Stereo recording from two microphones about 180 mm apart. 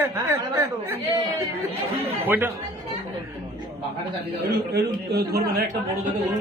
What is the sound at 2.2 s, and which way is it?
Speech, 10° right (ahead or behind).